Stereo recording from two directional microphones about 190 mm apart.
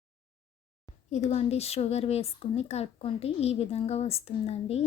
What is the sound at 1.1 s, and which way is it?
Speech, 35° left (ahead or behind).